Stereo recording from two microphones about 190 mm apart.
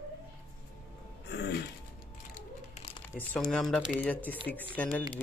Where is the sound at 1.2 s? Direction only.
60° left (ahead or behind).